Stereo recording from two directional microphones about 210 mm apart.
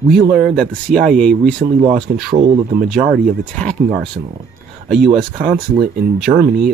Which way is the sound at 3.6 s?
5° left (ahead or behind).